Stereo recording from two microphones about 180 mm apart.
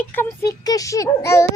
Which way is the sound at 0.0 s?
10° left (ahead or behind).